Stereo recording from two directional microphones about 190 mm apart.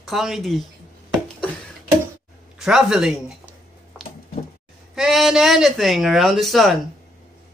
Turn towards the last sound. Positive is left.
turn(degrees=0)  # may be behind; listen again after turning